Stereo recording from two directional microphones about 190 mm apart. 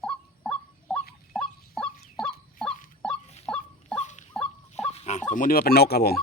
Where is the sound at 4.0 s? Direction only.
40° left (ahead or behind).